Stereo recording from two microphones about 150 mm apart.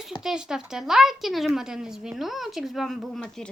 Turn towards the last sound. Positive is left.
turn(degrees=5)  # may be behind; listen again after turning